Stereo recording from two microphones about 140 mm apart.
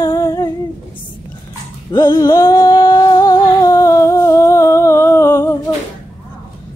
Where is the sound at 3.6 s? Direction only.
25° left (ahead or behind).